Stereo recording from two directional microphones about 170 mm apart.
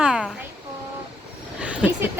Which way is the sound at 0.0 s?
5° right (ahead or behind).